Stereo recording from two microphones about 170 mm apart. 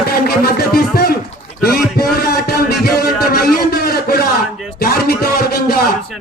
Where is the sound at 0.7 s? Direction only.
65° left (ahead or behind).